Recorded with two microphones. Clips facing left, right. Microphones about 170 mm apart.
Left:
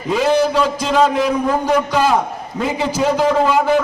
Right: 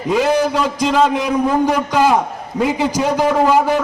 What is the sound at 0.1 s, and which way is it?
A man's voice, 15° right (ahead or behind).